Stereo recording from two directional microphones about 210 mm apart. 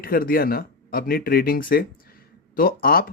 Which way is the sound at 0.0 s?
45° left (ahead or behind).